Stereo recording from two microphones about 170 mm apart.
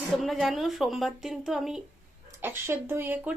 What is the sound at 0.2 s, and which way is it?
Speech, centre (ahead or behind).